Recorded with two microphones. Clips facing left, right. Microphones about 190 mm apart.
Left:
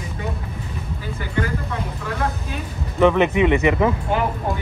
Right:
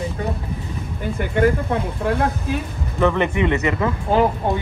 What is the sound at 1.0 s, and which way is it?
Speech, 60° right (ahead or behind).